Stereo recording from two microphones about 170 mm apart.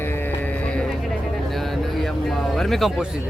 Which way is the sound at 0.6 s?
5° left (ahead or behind).